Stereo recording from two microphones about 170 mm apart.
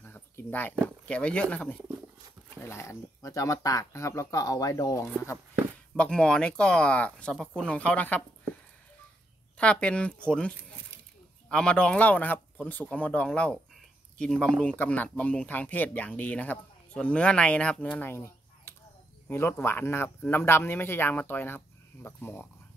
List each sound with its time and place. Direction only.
0.0 s a sound: 10° left (ahead or behind)
0.8 s speech: 5° left (ahead or behind)
5.9 s speech: 5° left (ahead or behind)
9.6 s speech: 5° left (ahead or behind)